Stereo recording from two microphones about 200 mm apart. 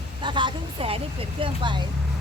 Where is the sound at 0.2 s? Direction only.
25° right (ahead or behind).